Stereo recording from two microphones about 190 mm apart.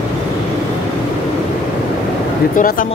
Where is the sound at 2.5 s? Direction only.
45° left (ahead or behind).